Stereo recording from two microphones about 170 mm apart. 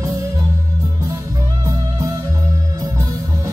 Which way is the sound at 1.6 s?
20° right (ahead or behind).